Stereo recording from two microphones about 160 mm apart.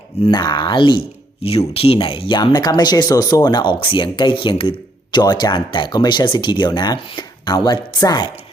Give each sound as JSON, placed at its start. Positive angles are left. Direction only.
{"t": 0.2, "sound": "speech", "side_deg": 30}